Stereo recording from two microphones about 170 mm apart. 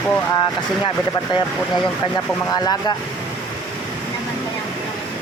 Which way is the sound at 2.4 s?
25° left (ahead or behind).